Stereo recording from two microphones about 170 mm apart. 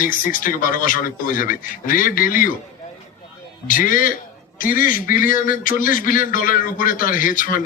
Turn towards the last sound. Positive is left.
turn(degrees=55)  # may be behind; listen again after turning